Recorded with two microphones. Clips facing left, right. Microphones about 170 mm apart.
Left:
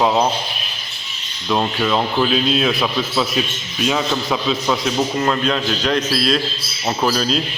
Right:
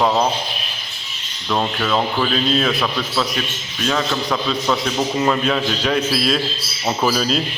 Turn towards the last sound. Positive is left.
turn(degrees=0)  # may be behind; listen again after turning